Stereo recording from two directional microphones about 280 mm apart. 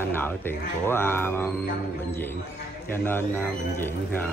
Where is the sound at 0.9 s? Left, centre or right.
Centre.